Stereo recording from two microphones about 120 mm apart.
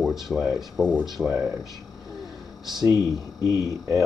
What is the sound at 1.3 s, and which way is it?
Speech, 20° right (ahead or behind).